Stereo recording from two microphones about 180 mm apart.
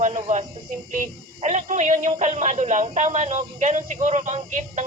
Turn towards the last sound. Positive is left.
turn(degrees=-40)  # may be behind; listen again after turning